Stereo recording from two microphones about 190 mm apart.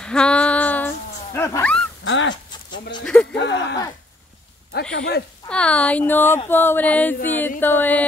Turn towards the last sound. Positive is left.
turn(degrees=10)  # may be behind; listen again after turning